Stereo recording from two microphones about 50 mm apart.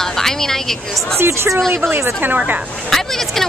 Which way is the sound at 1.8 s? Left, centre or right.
Right.